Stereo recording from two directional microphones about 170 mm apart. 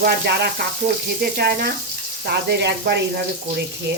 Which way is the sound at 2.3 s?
75° right (ahead or behind).